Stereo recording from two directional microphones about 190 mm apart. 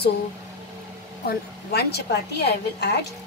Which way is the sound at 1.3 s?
60° left (ahead or behind).